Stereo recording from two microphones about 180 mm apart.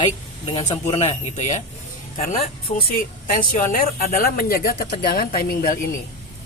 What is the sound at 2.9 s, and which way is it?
Speech, 50° left (ahead or behind).